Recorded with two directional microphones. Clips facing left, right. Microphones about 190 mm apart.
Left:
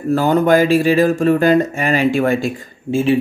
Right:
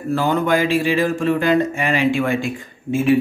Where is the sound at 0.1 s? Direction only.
40° left (ahead or behind).